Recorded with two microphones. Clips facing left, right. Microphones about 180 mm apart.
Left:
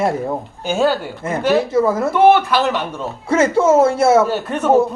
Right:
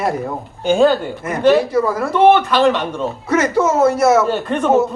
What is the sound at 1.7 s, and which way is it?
Speech, 25° left (ahead or behind).